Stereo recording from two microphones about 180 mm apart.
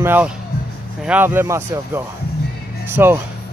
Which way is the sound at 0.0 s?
10° right (ahead or behind).